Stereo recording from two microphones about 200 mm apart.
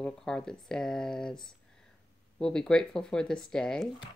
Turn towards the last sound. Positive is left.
turn(degrees=5)  # may be behind; listen again after turning